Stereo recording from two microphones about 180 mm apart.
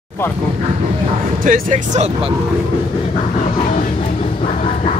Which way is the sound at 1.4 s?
45° right (ahead or behind).